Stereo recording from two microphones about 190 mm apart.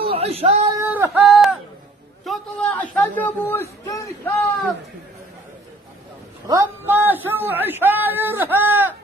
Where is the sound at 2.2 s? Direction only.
5° left (ahead or behind).